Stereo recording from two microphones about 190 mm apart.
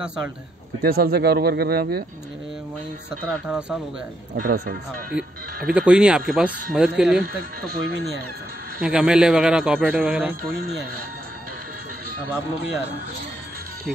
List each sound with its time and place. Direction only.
0.8 s speech: 55° right (ahead or behind)
3.4 s speech: 5° right (ahead or behind)
4.4 s speech: 50° right (ahead or behind)
5.1 s speech: 5° right (ahead or behind)
8.8 s speech: 5° right (ahead or behind)